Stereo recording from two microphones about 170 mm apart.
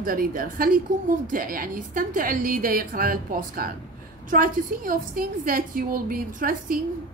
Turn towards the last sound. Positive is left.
turn(degrees=-55)  # may be behind; listen again after turning